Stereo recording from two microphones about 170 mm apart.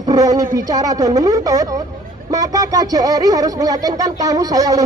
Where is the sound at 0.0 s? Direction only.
20° right (ahead or behind).